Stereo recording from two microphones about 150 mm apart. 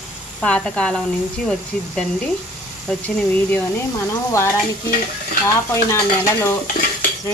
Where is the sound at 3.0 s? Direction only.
10° left (ahead or behind).